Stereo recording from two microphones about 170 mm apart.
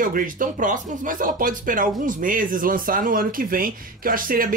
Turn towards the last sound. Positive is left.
turn(degrees=-55)  # may be behind; listen again after turning